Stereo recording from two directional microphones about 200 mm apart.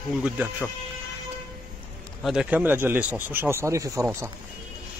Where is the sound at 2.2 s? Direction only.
Centre (ahead or behind).